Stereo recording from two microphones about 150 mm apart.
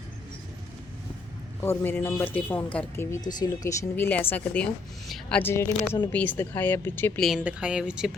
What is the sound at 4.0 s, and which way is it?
Speech, 15° left (ahead or behind).